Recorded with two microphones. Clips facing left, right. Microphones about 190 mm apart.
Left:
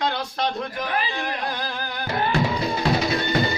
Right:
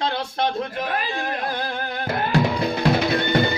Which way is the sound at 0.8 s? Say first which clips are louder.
Right 1 dB; 50° right (ahead or behind).